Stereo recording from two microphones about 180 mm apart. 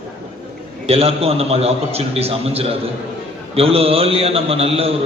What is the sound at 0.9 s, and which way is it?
A man's voice, 35° right (ahead or behind).